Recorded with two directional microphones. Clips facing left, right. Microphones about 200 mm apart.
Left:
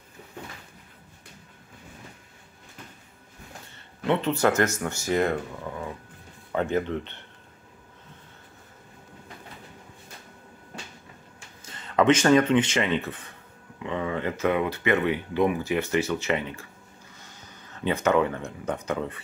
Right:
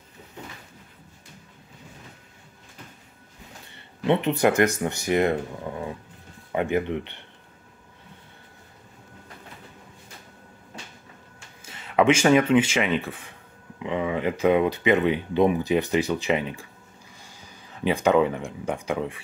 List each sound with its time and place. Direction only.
3.7 s a sound: 20° right (ahead or behind)
4.8 s speech: 15° right (ahead or behind)
11.6 s speech: 10° right (ahead or behind)